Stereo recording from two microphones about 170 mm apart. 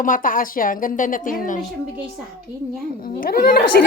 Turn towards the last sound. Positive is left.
turn(degrees=65)  # may be behind; listen again after turning